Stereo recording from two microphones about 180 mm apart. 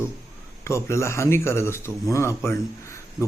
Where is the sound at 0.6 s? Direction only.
15° left (ahead or behind).